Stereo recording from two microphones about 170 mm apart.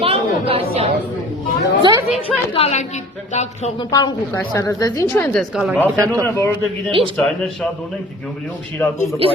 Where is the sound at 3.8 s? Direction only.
25° left (ahead or behind).